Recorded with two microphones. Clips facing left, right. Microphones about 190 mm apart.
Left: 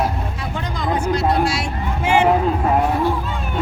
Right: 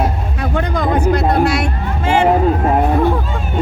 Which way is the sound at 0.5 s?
55° right (ahead or behind).